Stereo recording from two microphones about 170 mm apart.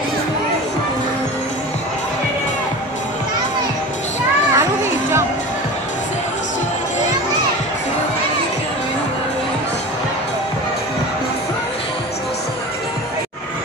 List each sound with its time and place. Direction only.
4.6 s children playing: 15° right (ahead or behind)